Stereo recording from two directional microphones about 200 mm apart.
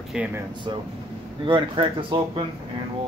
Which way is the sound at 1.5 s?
25° right (ahead or behind).